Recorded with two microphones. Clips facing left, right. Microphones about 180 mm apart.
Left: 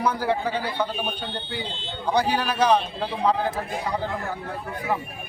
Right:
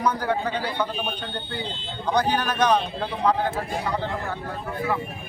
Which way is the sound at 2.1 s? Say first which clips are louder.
Even; 10° left (ahead or behind).